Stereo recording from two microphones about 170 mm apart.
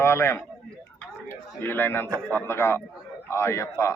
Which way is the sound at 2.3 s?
15° left (ahead or behind).